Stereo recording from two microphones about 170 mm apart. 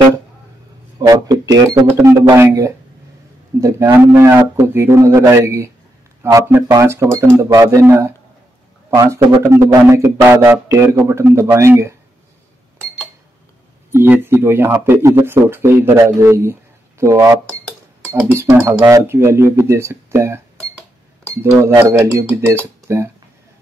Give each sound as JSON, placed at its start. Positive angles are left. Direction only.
{"t": 0.9, "sound": "speech", "side_deg": -20}
{"t": 13.9, "sound": "speech", "side_deg": -10}
{"t": 17.5, "sound": "dishes", "side_deg": 5}
{"t": 18.1, "sound": "speech", "side_deg": -10}